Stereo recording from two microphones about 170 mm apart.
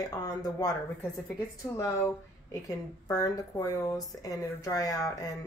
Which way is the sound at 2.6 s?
20° left (ahead or behind).